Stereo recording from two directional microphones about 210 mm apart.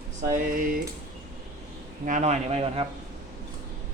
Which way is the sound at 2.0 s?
35° right (ahead or behind).